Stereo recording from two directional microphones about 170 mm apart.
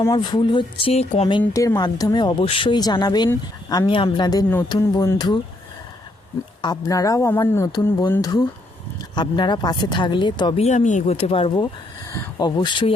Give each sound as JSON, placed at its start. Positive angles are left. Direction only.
{"t": 0.1, "sound": "speech", "side_deg": 30}
{"t": 6.6, "sound": "speech", "side_deg": 25}
{"t": 10.6, "sound": "speech", "side_deg": 45}